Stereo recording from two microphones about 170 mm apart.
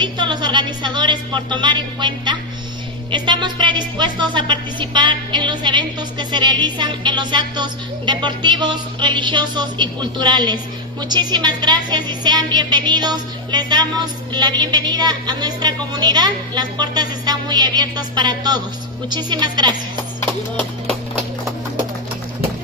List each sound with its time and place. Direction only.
0.0 s a woman's voice: 25° right (ahead or behind)